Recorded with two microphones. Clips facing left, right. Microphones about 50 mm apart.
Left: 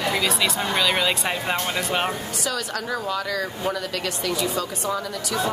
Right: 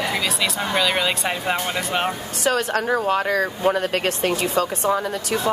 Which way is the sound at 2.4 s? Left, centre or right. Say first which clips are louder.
Right 10 dB; right.